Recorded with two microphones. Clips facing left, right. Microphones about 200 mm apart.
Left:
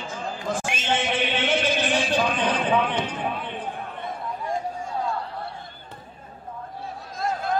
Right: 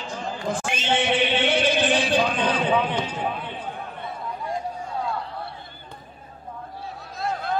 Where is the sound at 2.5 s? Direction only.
10° right (ahead or behind).